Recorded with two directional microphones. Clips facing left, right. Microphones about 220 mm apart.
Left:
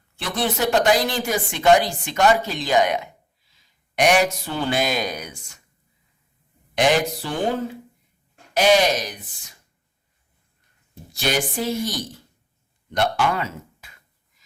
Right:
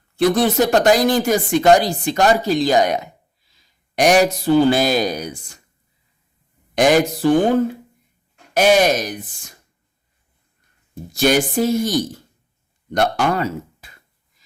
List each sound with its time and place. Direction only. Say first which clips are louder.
0.2 s speech: right 9 dB; 40° right (ahead or behind)
6.7 s speech: right 5 dB; 45° right (ahead or behind)
8.5 s speech: right 3 dB; 50° right (ahead or behind)
11.1 s speech: right 8 dB; 45° right (ahead or behind)